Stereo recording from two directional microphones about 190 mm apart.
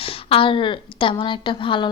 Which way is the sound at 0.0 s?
30° left (ahead or behind).